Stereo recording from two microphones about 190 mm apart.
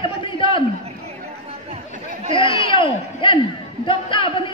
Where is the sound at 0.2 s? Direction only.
25° left (ahead or behind).